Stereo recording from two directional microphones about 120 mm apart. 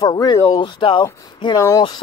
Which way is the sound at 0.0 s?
35° left (ahead or behind).